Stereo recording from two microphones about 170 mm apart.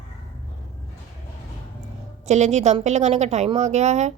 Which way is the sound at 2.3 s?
40° right (ahead or behind).